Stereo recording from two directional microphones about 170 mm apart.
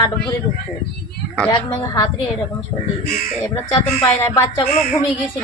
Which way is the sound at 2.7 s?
30° left (ahead or behind).